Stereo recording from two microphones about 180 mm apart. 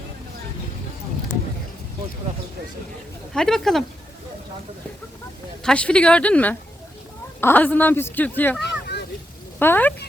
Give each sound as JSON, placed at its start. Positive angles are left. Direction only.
{"t": 3.3, "sound": "speech", "side_deg": 0}
{"t": 5.6, "sound": "speech", "side_deg": 5}
{"t": 8.6, "sound": "a sound", "side_deg": 65}
{"t": 9.6, "sound": "speech", "side_deg": 10}